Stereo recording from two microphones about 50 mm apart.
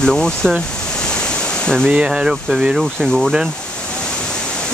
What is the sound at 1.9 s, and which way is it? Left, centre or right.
Speech, centre.